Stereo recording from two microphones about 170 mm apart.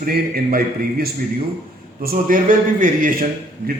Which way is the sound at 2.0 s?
55° right (ahead or behind).